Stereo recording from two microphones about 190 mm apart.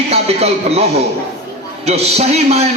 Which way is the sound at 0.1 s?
30° right (ahead or behind).